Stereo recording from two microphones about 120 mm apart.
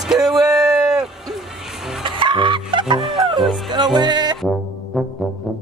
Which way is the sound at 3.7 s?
35° right (ahead or behind).